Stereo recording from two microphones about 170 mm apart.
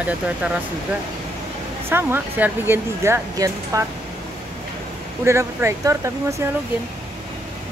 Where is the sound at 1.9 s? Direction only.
15° right (ahead or behind).